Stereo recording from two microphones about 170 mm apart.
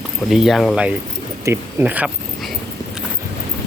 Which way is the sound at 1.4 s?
15° right (ahead or behind).